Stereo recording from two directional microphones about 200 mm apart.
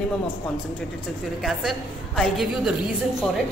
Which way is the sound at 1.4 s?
Centre (ahead or behind).